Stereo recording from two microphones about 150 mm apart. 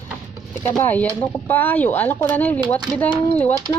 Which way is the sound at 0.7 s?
10° left (ahead or behind).